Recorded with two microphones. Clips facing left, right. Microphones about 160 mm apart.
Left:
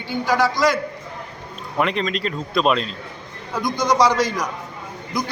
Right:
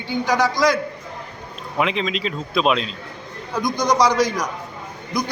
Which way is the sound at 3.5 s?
15° right (ahead or behind).